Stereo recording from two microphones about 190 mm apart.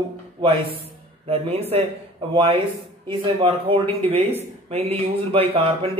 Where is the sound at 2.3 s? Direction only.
25° right (ahead or behind).